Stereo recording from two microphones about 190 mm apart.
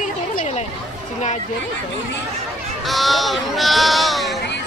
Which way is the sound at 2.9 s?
Centre (ahead or behind).